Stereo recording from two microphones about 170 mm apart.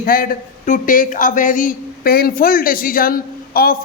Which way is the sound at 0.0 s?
55° left (ahead or behind).